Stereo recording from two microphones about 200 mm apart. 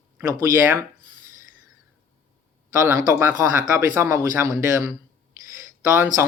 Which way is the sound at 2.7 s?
15° right (ahead or behind).